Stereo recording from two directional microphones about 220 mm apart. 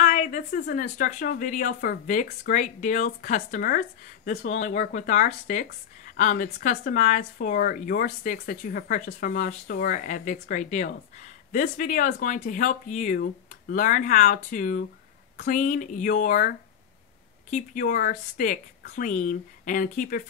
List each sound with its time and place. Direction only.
0.0 s speech: 35° left (ahead or behind)